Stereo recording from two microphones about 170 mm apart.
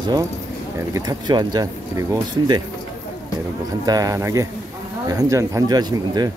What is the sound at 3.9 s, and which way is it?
A man's voice, 20° right (ahead or behind).